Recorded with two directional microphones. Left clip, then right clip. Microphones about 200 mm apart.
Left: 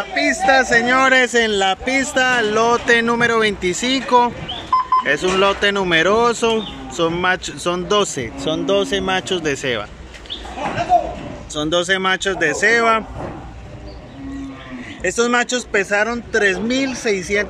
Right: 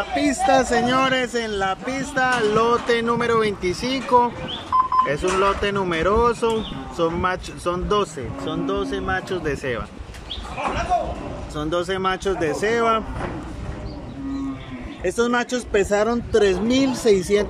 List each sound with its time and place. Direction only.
0.1 s speech: 15° right (ahead or behind)
8.2 s speech: 10° left (ahead or behind)
11.5 s speech: centre (ahead or behind)
15.0 s speech: 10° right (ahead or behind)